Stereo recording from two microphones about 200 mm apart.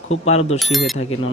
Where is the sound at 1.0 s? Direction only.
30° left (ahead or behind).